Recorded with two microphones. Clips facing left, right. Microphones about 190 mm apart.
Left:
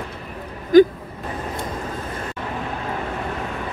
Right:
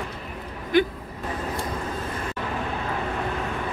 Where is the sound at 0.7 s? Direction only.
40° left (ahead or behind).